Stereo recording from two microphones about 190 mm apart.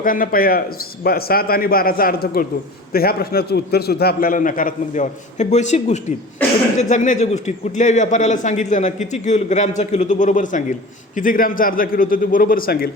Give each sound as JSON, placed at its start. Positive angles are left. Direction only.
{"t": 0.0, "sound": "a man's voice", "side_deg": 45}